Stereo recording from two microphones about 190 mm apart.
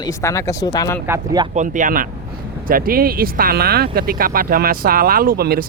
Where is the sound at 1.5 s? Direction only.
45° right (ahead or behind).